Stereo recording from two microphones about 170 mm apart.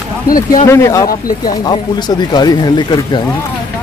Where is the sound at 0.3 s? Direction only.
55° left (ahead or behind).